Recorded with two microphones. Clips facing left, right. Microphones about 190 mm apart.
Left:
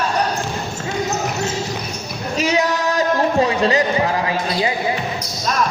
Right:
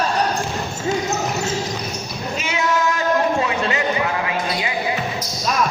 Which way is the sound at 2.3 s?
35° left (ahead or behind).